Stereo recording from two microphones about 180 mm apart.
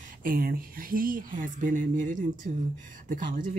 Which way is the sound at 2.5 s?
35° right (ahead or behind).